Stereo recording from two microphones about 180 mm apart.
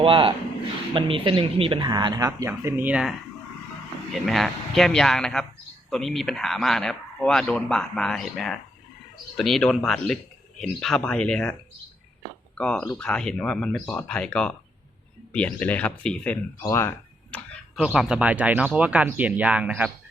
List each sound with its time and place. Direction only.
0.0 s speech: 30° right (ahead or behind); by 11.5 s 5° left (ahead or behind)
12.5 s speech: 5° left (ahead or behind)
17.7 s speech: 5° right (ahead or behind)